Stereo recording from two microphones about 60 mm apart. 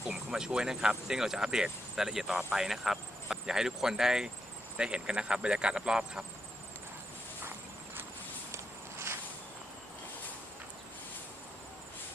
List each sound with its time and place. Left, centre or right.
0.0 s speech: centre
8.5 s walk: right